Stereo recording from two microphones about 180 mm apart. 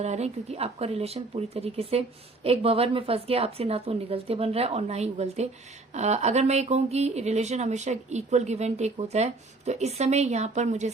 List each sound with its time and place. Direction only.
0.0 s speech: 35° right (ahead or behind)